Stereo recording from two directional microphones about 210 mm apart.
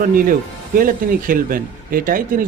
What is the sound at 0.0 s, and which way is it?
Speech, 40° right (ahead or behind).